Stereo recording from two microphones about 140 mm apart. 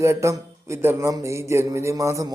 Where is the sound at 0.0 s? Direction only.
20° right (ahead or behind).